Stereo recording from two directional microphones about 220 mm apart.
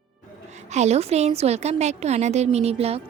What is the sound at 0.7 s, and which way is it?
A woman's voice, 30° right (ahead or behind).